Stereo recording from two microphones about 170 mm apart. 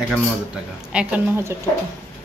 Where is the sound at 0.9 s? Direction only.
5° right (ahead or behind).